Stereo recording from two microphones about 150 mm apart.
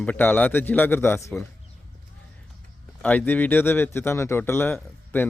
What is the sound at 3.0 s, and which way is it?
Speech, 10° left (ahead or behind).